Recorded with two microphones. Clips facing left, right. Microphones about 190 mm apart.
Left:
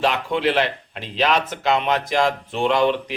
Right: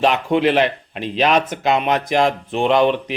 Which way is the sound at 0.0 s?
20° right (ahead or behind).